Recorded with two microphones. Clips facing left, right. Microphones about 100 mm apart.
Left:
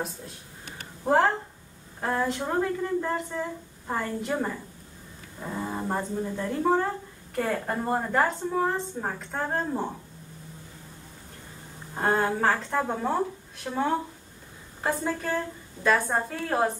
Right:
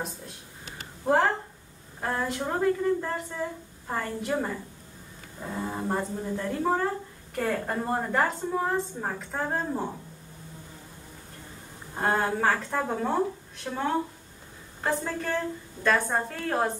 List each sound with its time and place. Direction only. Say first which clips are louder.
1.1 s a woman's voice: left 1 dB; centre (ahead or behind)
5.4 s a woman's voice: even; 5° left (ahead or behind)
11.9 s a woman's voice: left 1 dB; centre (ahead or behind)